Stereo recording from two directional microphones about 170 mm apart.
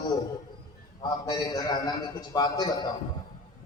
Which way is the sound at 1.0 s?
20° left (ahead or behind).